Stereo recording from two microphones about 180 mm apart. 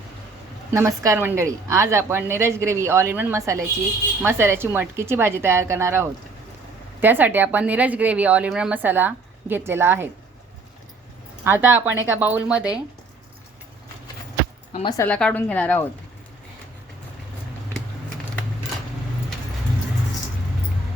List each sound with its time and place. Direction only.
0.7 s a woman's voice: 15° right (ahead or behind)
11.4 s a woman's voice: 10° right (ahead or behind)
14.7 s speech: 30° left (ahead or behind)
14.9 s a woman's voice: 10° left (ahead or behind)